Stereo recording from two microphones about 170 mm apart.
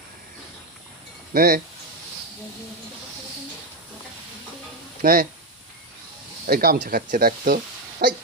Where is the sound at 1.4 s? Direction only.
60° right (ahead or behind).